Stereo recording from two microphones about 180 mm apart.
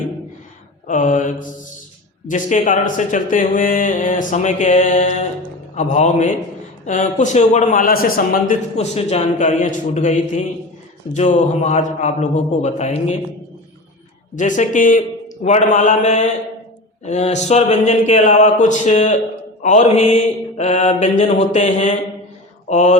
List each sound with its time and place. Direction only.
0.9 s a man's voice: 45° left (ahead or behind)
5.7 s mantra: 40° left (ahead or behind)
6.8 s a man's voice: 45° left (ahead or behind)
11.1 s mantra: 40° left (ahead or behind)
14.3 s a man's voice: 45° left (ahead or behind)
15.4 s mantra: 45° left (ahead or behind)